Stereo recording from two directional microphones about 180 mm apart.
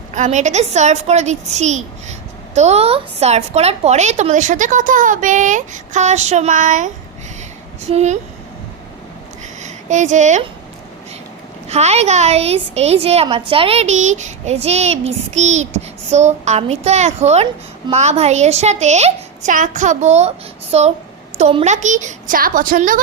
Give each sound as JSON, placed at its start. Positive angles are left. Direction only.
{"t": 0.1, "sound": "a woman's voice", "side_deg": -40}
{"t": 9.6, "sound": "speech", "side_deg": -40}
{"t": 11.7, "sound": "a woman's voice", "side_deg": -35}